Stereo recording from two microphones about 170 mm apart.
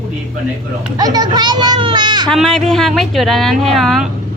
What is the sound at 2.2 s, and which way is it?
Speech, 5° left (ahead or behind).